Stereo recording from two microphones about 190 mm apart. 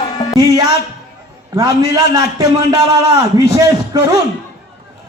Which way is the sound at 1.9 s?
20° right (ahead or behind).